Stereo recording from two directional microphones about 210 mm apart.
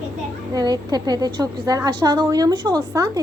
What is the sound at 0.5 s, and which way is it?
A woman's voice, 20° right (ahead or behind).